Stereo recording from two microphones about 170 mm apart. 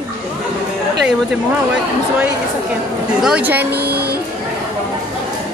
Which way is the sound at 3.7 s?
65° right (ahead or behind).